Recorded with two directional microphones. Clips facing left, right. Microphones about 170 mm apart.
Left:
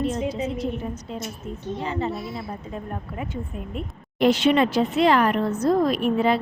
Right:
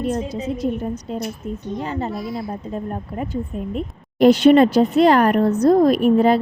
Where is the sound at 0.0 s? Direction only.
45° right (ahead or behind).